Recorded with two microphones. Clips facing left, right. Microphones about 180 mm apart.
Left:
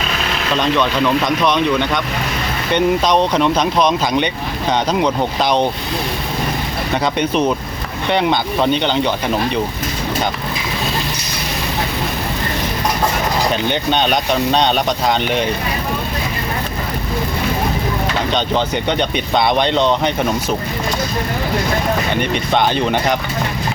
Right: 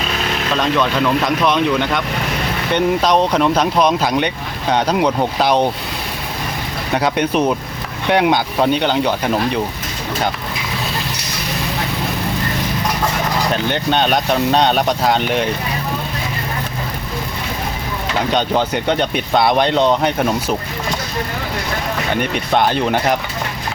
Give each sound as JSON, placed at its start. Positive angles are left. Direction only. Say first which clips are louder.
{"t": 0.5, "sound": "speech", "louder": "left 1 dB", "side_deg": -5}
{"t": 6.9, "sound": "speech", "louder": "right 1 dB", "side_deg": -5}
{"t": 13.5, "sound": "speech", "louder": "even", "side_deg": 0}
{"t": 18.3, "sound": "speech", "louder": "right 3 dB", "side_deg": -10}
{"t": 22.1, "sound": "speech", "louder": "even", "side_deg": -5}